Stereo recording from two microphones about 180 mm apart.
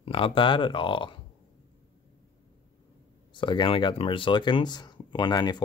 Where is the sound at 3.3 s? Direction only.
25° left (ahead or behind).